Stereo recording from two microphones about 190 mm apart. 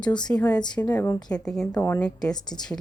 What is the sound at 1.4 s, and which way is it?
Speech, 5° left (ahead or behind).